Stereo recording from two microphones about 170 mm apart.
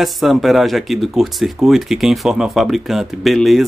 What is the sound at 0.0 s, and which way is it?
Speech, centre (ahead or behind).